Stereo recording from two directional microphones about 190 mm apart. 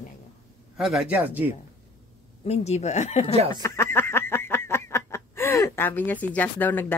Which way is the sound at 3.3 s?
30° right (ahead or behind).